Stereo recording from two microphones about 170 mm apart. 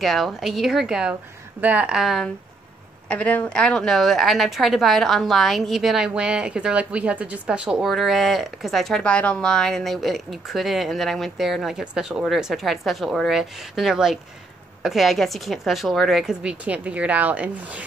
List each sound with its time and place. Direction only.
0.0 s a woman's voice: centre (ahead or behind)